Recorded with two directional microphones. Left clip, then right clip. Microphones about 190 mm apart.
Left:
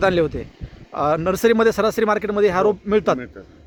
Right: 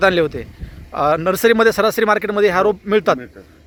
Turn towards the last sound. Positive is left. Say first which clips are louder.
# right 2 dB
turn(degrees=5)  # may be behind; listen again after turning